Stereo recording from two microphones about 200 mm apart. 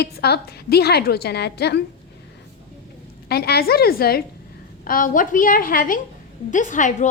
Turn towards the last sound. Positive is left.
turn(degrees=40)  # may be behind; listen again after turning